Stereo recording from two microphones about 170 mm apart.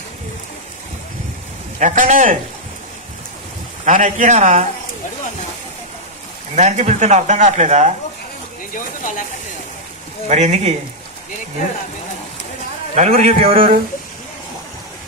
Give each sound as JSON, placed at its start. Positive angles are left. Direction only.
{"t": 1.8, "sound": "speech", "side_deg": -45}
{"t": 3.8, "sound": "speech", "side_deg": -50}
{"t": 6.5, "sound": "speech", "side_deg": -45}
{"t": 8.7, "sound": "speech", "side_deg": 50}
{"t": 10.2, "sound": "speech", "side_deg": -40}
{"t": 12.9, "sound": "a man's voice", "side_deg": -40}